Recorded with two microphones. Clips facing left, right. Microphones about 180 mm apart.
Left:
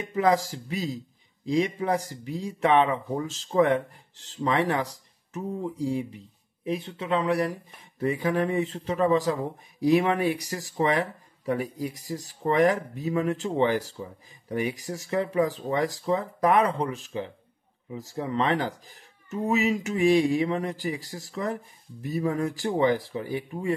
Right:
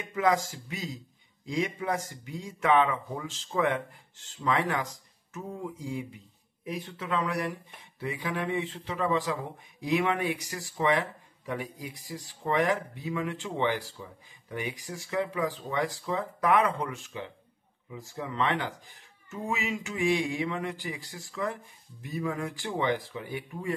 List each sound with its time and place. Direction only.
0.0 s speech: 35° left (ahead or behind)